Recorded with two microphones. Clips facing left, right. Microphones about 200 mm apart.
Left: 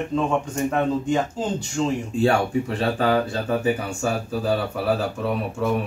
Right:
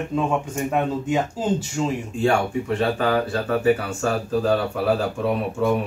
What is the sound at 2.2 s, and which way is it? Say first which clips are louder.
Speech: even; 35° left (ahead or behind).